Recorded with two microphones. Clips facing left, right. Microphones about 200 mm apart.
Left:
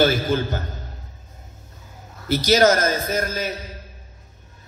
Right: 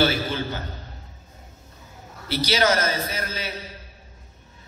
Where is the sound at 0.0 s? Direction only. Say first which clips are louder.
Left 4 dB; 45° left (ahead or behind).